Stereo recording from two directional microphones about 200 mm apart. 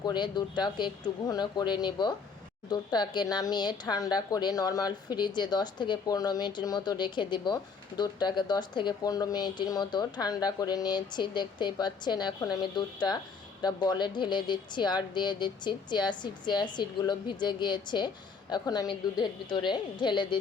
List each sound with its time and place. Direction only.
0.0 s speech: 20° left (ahead or behind)